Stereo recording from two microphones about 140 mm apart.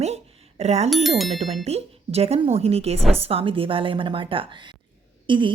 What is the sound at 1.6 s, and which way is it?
A woman's voice, 50° right (ahead or behind).